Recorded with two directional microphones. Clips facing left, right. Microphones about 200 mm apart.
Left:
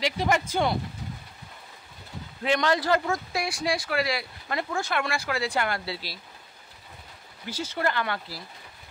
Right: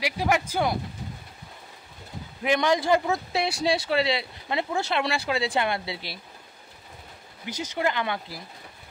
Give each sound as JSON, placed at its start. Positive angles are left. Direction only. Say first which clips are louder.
{"t": 0.0, "sound": "a man's voice", "louder": "even", "side_deg": -10}
{"t": 2.4, "sound": "a man's voice", "louder": "right 1 dB", "side_deg": -15}
{"t": 7.4, "sound": "speech", "louder": "right 1 dB", "side_deg": -20}